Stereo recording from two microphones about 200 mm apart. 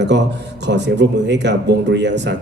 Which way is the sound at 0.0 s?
60° right (ahead or behind).